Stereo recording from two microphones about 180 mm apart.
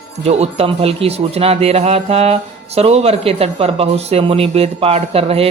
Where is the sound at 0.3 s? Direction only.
35° right (ahead or behind).